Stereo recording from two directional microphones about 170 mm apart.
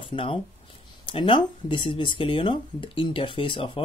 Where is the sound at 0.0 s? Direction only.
30° left (ahead or behind).